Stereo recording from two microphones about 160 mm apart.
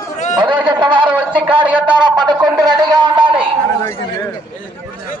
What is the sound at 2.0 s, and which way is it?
A man's voice, 30° right (ahead or behind).